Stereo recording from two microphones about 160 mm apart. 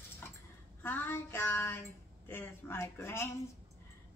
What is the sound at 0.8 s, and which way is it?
Child singing, 15° left (ahead or behind).